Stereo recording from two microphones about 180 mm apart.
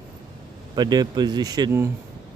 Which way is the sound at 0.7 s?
25° right (ahead or behind).